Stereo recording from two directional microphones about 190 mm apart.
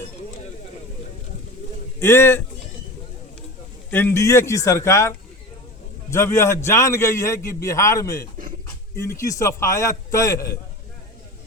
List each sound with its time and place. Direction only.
2.0 s a man's voice: 15° left (ahead or behind)
3.9 s a man's voice: 15° left (ahead or behind)